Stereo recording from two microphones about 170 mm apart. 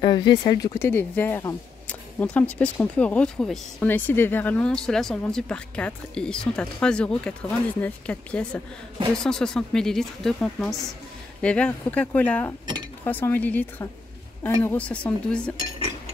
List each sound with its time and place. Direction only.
0.0 s speech: 25° left (ahead or behind)
0.7 s speech: 15° left (ahead or behind)